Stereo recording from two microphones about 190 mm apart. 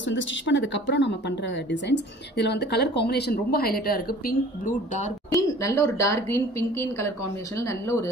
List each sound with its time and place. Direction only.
0.1 s speech: 70° left (ahead or behind); by 5.0 s 45° left (ahead or behind)
5.3 s speech: 15° left (ahead or behind)